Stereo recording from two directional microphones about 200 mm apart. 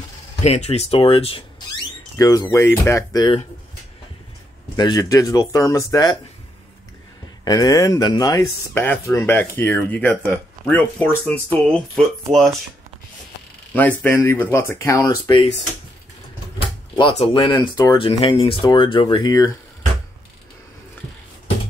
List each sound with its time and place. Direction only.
0.4 s speech: 35° left (ahead or behind)
2.1 s speech: 15° left (ahead or behind)
4.7 s speech: 20° left (ahead or behind)
7.4 s speech: 15° left (ahead or behind); by 12.5 s centre (ahead or behind)
13.7 s speech: 10° left (ahead or behind)
16.9 s speech: 25° left (ahead or behind)